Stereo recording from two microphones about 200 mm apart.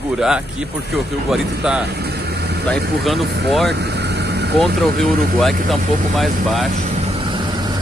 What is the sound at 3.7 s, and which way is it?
Vehicle, 55° right (ahead or behind).